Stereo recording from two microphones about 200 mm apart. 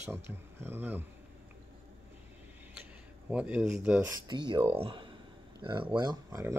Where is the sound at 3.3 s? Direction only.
5° right (ahead or behind).